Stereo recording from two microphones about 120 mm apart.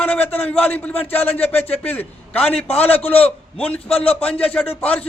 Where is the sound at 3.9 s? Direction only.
55° left (ahead or behind).